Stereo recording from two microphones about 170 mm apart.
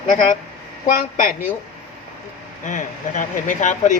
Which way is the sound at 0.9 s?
50° left (ahead or behind).